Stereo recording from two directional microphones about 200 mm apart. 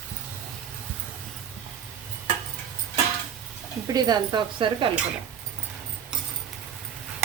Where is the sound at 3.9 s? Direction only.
20° right (ahead or behind).